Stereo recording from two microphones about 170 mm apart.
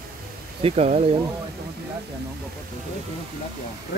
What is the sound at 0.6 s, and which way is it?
Speech, 35° right (ahead or behind).